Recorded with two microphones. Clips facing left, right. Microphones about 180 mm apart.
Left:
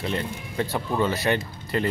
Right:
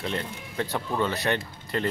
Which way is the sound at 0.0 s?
5° left (ahead or behind).